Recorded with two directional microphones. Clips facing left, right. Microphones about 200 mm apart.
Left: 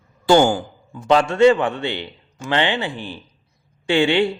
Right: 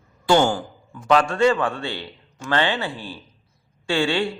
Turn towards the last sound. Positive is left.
turn(degrees=20)  # may be behind; listen again after turning